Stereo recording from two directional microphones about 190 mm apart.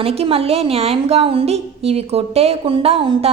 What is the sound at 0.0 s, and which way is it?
A woman's voice, 30° right (ahead or behind).